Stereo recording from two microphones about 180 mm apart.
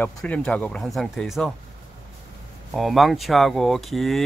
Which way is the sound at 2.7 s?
Centre (ahead or behind).